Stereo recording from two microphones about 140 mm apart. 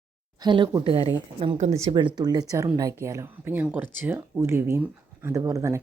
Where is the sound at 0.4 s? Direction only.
35° right (ahead or behind).